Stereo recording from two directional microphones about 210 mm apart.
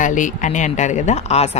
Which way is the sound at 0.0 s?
35° left (ahead or behind).